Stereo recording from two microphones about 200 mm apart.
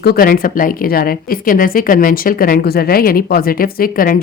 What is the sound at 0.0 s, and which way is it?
A woman's voice, 50° left (ahead or behind).